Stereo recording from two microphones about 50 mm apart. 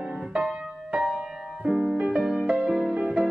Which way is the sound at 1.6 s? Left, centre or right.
Centre.